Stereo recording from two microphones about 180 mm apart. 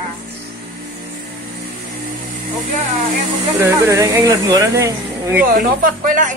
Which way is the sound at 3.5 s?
10° right (ahead or behind).